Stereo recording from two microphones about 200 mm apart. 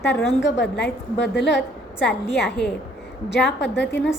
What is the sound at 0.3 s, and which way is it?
Speech, 65° left (ahead or behind).